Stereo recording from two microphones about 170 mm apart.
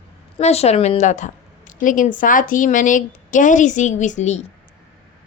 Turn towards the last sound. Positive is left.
turn(degrees=40)  # may be behind; listen again after turning